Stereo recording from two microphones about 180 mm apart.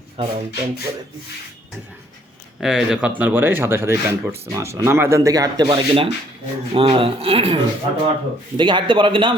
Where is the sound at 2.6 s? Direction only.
Centre (ahead or behind); by 7.5 s 30° right (ahead or behind).